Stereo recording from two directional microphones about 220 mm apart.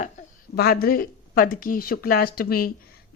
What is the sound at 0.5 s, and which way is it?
A woman's voice, 45° left (ahead or behind).